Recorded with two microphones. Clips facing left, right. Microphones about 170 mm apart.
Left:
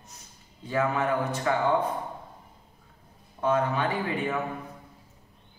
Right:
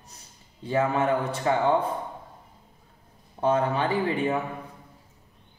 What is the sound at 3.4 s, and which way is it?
A man's voice, 30° right (ahead or behind).